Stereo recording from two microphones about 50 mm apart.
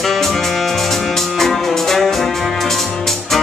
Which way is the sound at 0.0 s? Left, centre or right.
Centre.